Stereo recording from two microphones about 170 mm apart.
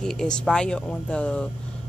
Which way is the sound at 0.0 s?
5° left (ahead or behind).